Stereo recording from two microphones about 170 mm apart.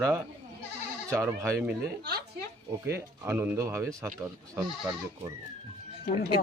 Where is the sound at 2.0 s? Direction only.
70° right (ahead or behind).